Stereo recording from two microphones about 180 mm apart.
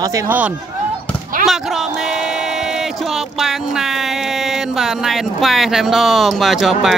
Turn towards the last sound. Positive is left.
turn(degrees=0)  # may be behind; listen again after turning